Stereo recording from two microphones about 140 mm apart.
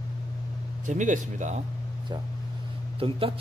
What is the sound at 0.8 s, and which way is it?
Speech, 65° right (ahead or behind).